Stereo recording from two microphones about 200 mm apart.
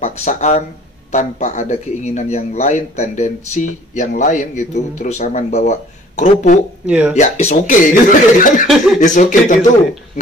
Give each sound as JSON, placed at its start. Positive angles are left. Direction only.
{"t": 0.0, "sound": "speech", "side_deg": 35}
{"t": 6.9, "sound": "speech", "side_deg": -5}
{"t": 7.2, "sound": "speech", "side_deg": 35}